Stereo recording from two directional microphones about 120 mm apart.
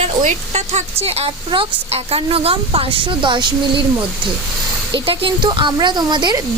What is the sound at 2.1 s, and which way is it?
A woman's voice, 55° right (ahead or behind).